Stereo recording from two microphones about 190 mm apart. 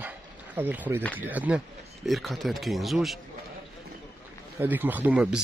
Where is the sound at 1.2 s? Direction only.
10° right (ahead or behind).